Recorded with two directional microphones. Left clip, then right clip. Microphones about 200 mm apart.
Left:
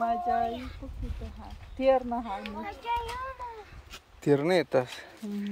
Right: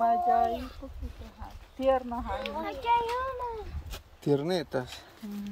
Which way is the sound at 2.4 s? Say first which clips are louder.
Right 5 dB; 40° right (ahead or behind).